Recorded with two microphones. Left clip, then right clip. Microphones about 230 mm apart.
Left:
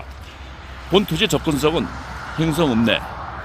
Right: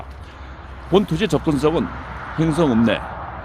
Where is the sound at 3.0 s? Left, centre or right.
Left.